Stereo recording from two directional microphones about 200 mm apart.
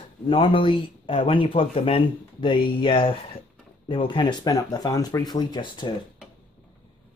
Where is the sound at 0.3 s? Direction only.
25° left (ahead or behind).